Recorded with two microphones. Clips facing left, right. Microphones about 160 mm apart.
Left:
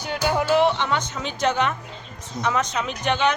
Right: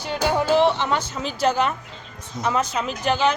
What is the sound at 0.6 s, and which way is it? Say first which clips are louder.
Speech: right 1 dB; centre (ahead or behind).